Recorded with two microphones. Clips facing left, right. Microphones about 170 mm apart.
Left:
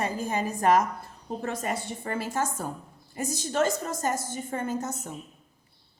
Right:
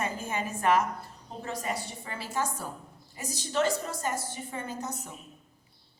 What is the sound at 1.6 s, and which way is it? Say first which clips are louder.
A woman's voice: left 4 dB; 50° left (ahead or behind).